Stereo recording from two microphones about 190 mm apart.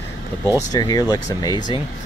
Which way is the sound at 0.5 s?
20° left (ahead or behind).